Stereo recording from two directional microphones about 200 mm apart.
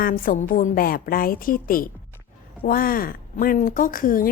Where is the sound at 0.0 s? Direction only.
45° left (ahead or behind).